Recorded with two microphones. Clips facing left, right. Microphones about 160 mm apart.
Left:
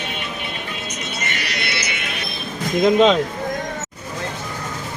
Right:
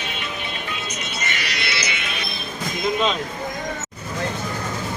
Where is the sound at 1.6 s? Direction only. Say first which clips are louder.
Left 1 dB; 55° left (ahead or behind).